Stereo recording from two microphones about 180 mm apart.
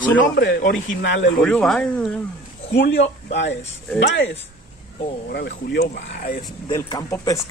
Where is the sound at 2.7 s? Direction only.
80° left.